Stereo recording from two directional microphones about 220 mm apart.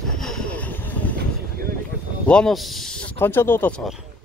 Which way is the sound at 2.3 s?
5° left (ahead or behind).